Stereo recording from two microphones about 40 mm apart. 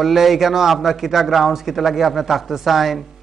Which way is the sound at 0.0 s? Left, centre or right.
Centre.